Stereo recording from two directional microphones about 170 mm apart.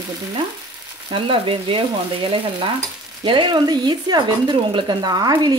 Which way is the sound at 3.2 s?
25° right (ahead or behind).